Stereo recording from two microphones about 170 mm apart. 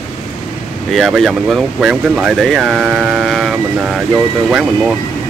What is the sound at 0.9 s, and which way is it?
Speech, centre (ahead or behind).